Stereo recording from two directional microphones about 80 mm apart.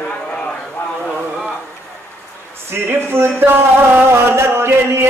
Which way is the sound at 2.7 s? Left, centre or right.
Right.